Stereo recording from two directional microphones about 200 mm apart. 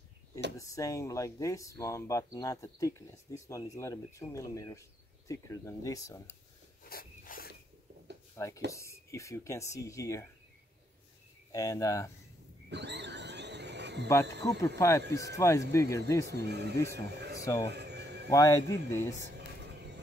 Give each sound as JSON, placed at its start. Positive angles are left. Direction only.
{"t": 0.6, "sound": "speech", "side_deg": 15}
{"t": 6.8, "sound": "a sound", "side_deg": 45}
{"t": 8.4, "sound": "speech", "side_deg": 15}
{"t": 11.5, "sound": "speech", "side_deg": 15}
{"t": 12.6, "sound": "wild animals", "side_deg": -60}
{"t": 14.4, "sound": "speech", "side_deg": 15}
{"t": 16.3, "sound": "speech", "side_deg": -55}
{"t": 17.2, "sound": "a sound", "side_deg": -55}
{"t": 17.6, "sound": "neigh", "side_deg": -55}
{"t": 18.3, "sound": "speech", "side_deg": 15}